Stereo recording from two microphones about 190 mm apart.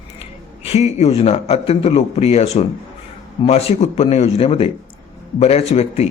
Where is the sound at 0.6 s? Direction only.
35° left (ahead or behind).